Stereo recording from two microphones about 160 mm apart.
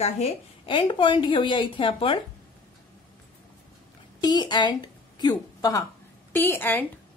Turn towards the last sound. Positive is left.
turn(degrees=10)  # may be behind; listen again after turning